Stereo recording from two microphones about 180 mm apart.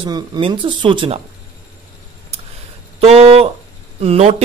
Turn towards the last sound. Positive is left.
turn(degrees=-35)  # may be behind; listen again after turning